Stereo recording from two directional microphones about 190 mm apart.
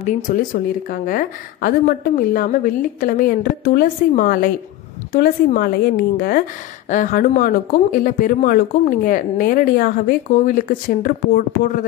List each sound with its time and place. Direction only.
0.0 s speech: 40° left (ahead or behind)